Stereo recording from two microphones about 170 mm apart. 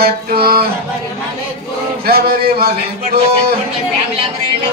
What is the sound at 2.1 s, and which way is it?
A man's voice, 65° right (ahead or behind).